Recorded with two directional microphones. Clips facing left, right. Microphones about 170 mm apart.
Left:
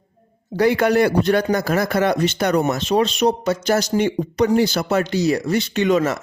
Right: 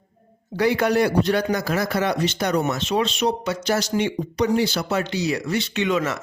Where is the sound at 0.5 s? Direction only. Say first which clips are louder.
Left 3 dB; 50° left (ahead or behind).